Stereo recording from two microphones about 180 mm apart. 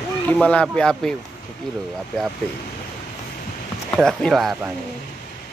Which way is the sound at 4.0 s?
Centre (ahead or behind).